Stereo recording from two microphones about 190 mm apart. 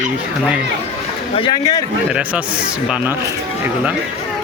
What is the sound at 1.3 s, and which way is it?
Speech, 30° left (ahead or behind).